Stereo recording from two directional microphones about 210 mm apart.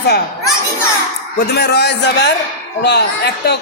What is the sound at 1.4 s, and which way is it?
A man's voice, 50° left (ahead or behind).